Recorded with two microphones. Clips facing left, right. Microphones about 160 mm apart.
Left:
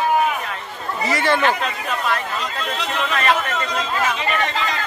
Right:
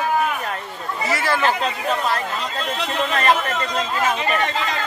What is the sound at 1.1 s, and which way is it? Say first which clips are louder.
Speech: left 3 dB; centre (ahead or behind).